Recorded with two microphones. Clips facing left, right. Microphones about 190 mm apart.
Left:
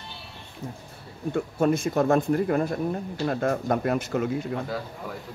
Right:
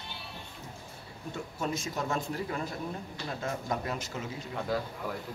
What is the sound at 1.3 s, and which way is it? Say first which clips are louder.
Speech: left 11 dB; 55° left (ahead or behind).